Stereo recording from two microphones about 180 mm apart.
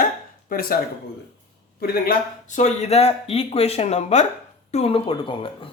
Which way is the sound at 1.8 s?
55° left (ahead or behind).